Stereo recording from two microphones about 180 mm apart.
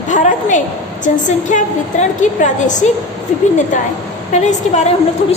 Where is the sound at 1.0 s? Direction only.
45° left (ahead or behind).